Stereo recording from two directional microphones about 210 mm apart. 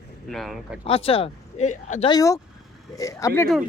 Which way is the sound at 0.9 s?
30° left (ahead or behind).